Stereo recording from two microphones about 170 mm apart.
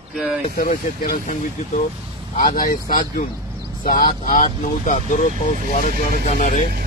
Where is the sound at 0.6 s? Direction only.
55° left (ahead or behind).